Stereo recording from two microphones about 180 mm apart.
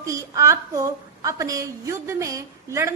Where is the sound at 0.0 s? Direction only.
15° right (ahead or behind).